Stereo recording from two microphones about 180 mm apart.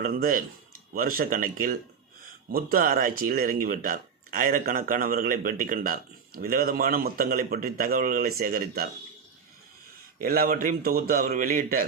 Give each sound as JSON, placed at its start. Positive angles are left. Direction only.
{"t": 0.0, "sound": "speech", "side_deg": -50}
{"t": 10.2, "sound": "speech", "side_deg": -55}